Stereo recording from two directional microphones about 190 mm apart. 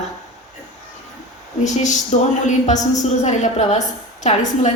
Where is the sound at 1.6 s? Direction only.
40° left (ahead or behind).